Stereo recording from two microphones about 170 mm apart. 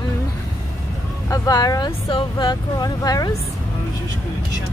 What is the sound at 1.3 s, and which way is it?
Speech, 20° left (ahead or behind).